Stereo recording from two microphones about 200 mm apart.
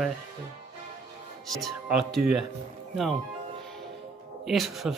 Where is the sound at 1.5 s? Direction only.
Centre (ahead or behind).